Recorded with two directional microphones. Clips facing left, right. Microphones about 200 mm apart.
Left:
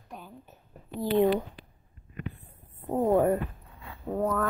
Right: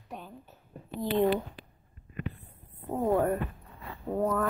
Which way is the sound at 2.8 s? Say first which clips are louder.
Left 3 dB; 15° left (ahead or behind).